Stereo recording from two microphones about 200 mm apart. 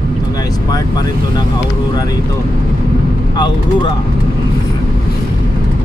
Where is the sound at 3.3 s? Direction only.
20° left (ahead or behind).